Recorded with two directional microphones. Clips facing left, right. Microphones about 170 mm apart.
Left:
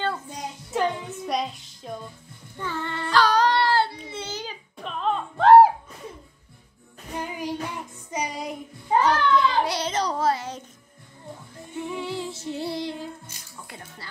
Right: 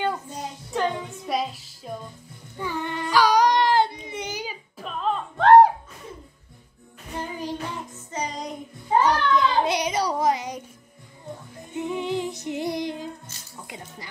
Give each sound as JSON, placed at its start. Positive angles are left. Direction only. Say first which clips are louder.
{"t": 0.0, "sound": "music", "louder": "right 2 dB", "side_deg": -15}
{"t": 0.7, "sound": "music", "louder": "left 1 dB", "side_deg": 0}
{"t": 2.5, "sound": "baby cry", "louder": "right 2 dB", "side_deg": -15}
{"t": 7.2, "sound": "music", "louder": "left 1 dB", "side_deg": 10}
{"t": 9.0, "sound": "child singing", "louder": "left 1 dB", "side_deg": -15}
{"t": 11.7, "sound": "music", "louder": "right 4 dB", "side_deg": -20}